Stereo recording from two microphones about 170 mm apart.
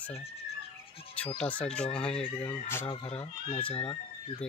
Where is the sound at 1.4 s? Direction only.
5° left (ahead or behind).